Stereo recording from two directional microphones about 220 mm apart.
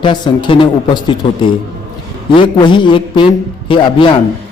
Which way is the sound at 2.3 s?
20° left (ahead or behind).